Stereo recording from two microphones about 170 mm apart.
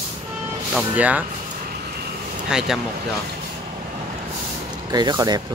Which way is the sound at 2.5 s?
5° right (ahead or behind).